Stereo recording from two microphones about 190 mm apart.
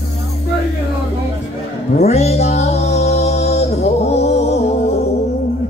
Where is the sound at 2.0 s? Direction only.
35° left (ahead or behind).